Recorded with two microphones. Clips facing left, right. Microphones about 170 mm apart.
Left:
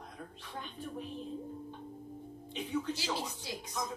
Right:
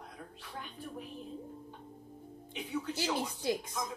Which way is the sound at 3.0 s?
50° right (ahead or behind).